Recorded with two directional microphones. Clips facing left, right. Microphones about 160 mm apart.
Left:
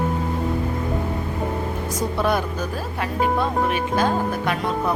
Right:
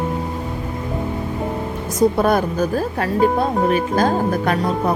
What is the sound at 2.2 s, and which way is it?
A woman's voice, 45° right (ahead or behind).